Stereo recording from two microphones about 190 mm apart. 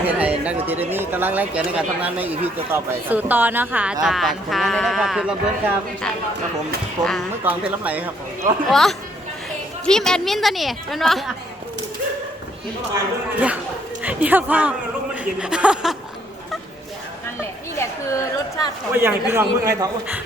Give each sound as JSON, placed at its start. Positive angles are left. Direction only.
{"t": 0.0, "sound": "speech", "side_deg": -10}
{"t": 14.0, "sound": "speech", "side_deg": -10}
{"t": 17.4, "sound": "a sound", "side_deg": 15}
{"t": 18.9, "sound": "speech", "side_deg": -10}